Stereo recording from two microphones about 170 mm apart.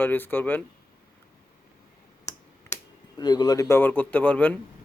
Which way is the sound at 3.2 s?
25° left (ahead or behind).